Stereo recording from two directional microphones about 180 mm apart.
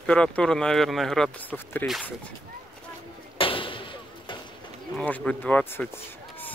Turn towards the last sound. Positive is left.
turn(degrees=10)  # may be behind; listen again after turning